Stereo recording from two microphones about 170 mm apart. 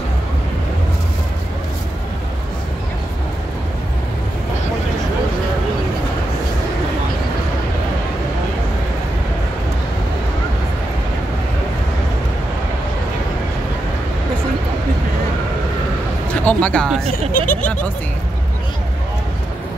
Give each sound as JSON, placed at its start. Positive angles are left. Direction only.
{"t": 16.4, "sound": "speech", "side_deg": 5}
{"t": 17.1, "sound": "speech", "side_deg": 55}